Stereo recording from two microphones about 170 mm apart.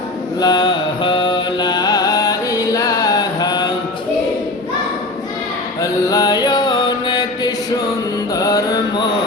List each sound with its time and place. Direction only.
0.3 s mantra: 25° left (ahead or behind)
5.8 s mantra: 20° left (ahead or behind)
8.4 s music: 20° left (ahead or behind)